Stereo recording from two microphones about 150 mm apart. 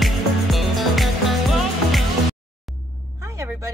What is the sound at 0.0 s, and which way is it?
Music, centre (ahead or behind).